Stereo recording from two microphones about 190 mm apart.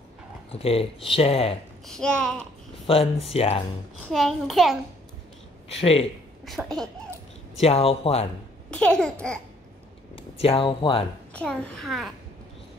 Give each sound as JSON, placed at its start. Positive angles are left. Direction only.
{"t": 0.5, "sound": "speech", "side_deg": 30}
{"t": 1.9, "sound": "a child's voice", "side_deg": 5}
{"t": 2.9, "sound": "speech", "side_deg": 30}
{"t": 4.0, "sound": "a child's voice", "side_deg": 0}
{"t": 5.8, "sound": "speech", "side_deg": 30}
{"t": 6.4, "sound": "a child's voice", "side_deg": 0}
{"t": 7.6, "sound": "speech", "side_deg": 30}
{"t": 8.6, "sound": "a child's voice", "side_deg": 5}
{"t": 10.1, "sound": "speech", "side_deg": 30}
{"t": 11.3, "sound": "a child's voice", "side_deg": 5}